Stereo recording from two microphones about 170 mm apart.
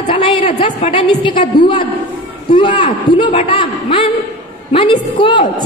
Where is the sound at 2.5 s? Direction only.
30° left (ahead or behind).